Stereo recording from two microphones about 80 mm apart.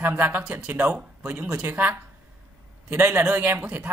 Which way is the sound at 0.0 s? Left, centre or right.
Centre.